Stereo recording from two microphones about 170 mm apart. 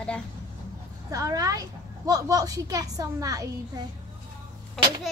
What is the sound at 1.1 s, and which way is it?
A child's voice, 20° right (ahead or behind).